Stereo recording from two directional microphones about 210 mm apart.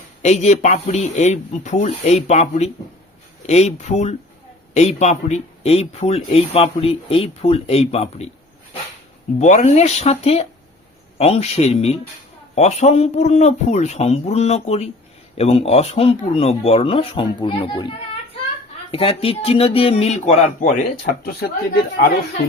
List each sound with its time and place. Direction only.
0.2 s speech: 35° left (ahead or behind)
9.4 s speech: 35° left (ahead or behind)